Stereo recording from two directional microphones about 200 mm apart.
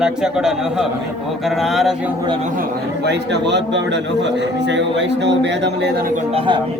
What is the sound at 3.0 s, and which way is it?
Speech, 60° right (ahead or behind).